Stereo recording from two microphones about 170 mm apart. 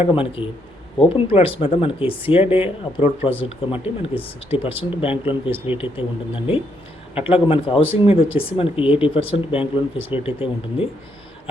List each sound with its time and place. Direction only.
0.0 s speech: 30° left (ahead or behind)
7.1 s speech: 35° left (ahead or behind)